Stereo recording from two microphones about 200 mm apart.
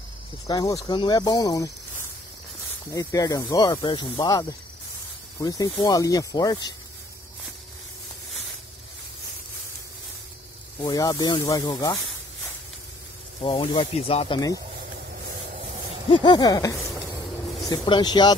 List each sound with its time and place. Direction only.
0.5 s speech: 20° left (ahead or behind)
2.9 s speech: 15° left (ahead or behind)
10.8 s speech: 20° left (ahead or behind)
13.4 s speech: 25° left (ahead or behind)
16.1 s speech: 20° left (ahead or behind)